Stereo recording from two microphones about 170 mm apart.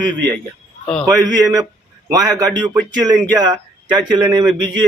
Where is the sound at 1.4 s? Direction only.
20° right (ahead or behind).